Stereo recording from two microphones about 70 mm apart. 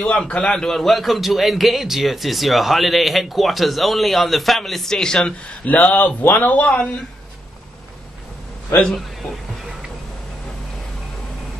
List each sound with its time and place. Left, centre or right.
0.0 s a man's voice: centre
5.7 s speech: left
9.6 s a sound: centre